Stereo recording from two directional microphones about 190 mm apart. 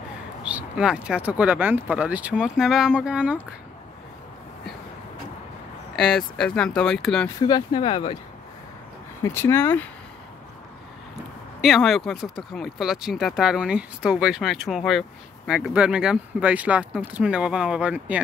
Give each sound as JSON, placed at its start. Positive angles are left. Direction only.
{"t": 0.4, "sound": "speech", "side_deg": -5}
{"t": 5.9, "sound": "speech", "side_deg": 0}
{"t": 7.4, "sound": "speech", "side_deg": 25}
{"t": 9.2, "sound": "speech", "side_deg": 15}
{"t": 11.6, "sound": "speech", "side_deg": 0}